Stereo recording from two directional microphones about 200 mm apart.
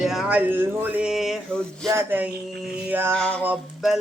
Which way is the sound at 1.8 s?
10° right (ahead or behind).